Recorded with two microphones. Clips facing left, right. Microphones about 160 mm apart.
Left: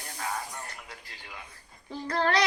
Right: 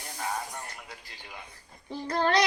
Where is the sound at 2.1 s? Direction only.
20° right (ahead or behind).